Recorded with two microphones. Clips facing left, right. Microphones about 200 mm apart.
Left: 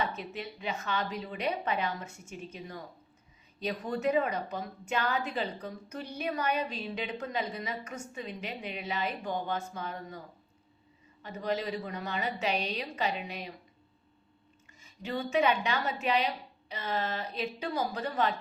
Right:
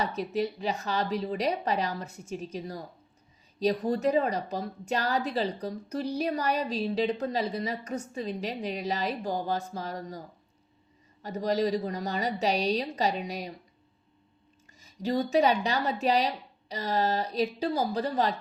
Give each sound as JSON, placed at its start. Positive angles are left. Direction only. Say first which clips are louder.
{"t": 0.0, "sound": "a woman's voice", "louder": "right 6 dB", "side_deg": -40}
{"t": 14.8, "sound": "a woman's voice", "louder": "right 7 dB", "side_deg": -40}